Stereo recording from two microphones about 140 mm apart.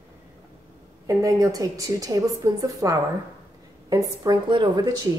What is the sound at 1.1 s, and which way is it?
A woman's voice, 25° right (ahead or behind).